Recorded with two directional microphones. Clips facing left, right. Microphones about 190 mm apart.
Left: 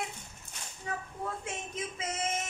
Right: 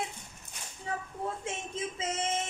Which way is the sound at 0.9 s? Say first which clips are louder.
Right 2 dB; 30° right (ahead or behind).